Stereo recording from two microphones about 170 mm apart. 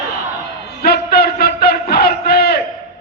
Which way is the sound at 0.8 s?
65° left (ahead or behind).